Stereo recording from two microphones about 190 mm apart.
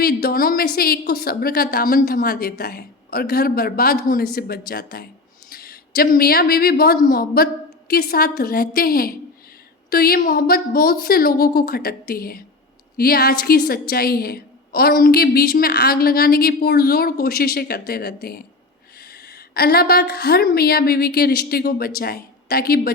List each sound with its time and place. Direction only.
0.0 s a woman's voice: 55° left (ahead or behind)